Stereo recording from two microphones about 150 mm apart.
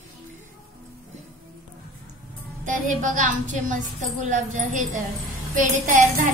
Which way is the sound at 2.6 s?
55° right (ahead or behind).